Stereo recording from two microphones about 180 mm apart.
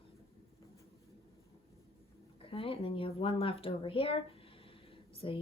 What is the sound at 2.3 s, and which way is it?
Speech, 30° left (ahead or behind).